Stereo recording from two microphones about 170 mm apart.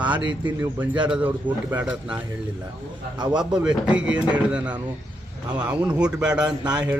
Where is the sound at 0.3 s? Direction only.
25° right (ahead or behind).